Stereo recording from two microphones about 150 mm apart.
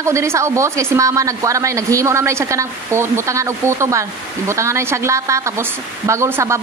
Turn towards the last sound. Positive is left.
turn(degrees=-15)  # may be behind; listen again after turning